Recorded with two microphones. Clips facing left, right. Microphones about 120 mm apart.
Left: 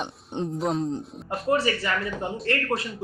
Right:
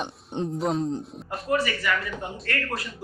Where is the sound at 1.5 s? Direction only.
30° left (ahead or behind).